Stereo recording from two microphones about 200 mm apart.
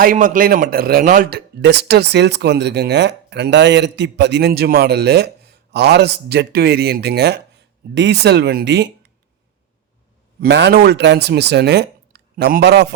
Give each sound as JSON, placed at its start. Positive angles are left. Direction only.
{"t": 0.0, "sound": "a man's voice", "side_deg": -40}
{"t": 10.4, "sound": "a man's voice", "side_deg": -55}